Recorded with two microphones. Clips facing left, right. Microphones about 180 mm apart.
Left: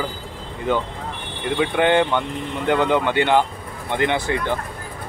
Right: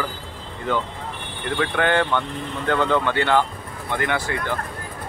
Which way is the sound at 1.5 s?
20° left (ahead or behind).